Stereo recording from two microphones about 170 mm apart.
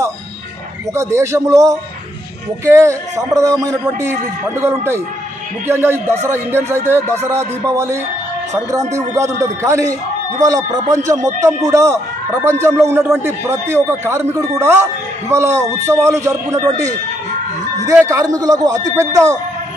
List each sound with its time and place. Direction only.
0.9 s a man's voice: 15° right (ahead or behind)
11.1 s speech: 45° right (ahead or behind)
11.4 s a man's voice: 20° right (ahead or behind)
18.0 s a man's voice: 20° right (ahead or behind)